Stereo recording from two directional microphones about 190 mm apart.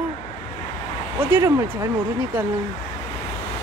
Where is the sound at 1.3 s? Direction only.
15° right (ahead or behind).